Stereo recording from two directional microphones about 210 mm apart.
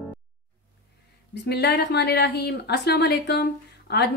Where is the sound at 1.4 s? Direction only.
50° left (ahead or behind).